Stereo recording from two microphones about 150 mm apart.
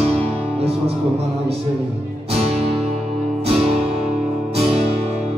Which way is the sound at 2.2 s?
45° right (ahead or behind).